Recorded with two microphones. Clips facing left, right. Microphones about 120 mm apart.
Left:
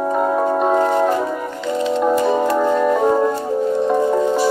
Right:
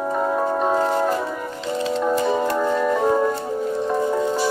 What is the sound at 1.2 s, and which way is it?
Music, 5° left (ahead or behind).